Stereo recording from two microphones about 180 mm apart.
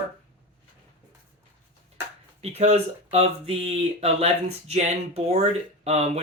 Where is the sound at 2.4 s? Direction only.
35° right (ahead or behind).